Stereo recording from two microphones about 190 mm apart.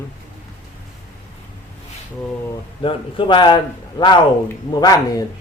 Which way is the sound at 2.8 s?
25° left (ahead or behind).